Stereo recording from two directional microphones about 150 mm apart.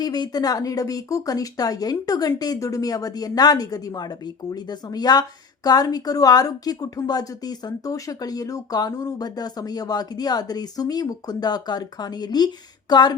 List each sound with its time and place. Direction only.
0.0 s a woman's voice: 25° left (ahead or behind)